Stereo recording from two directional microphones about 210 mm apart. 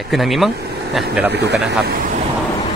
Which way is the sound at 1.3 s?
50° right (ahead or behind).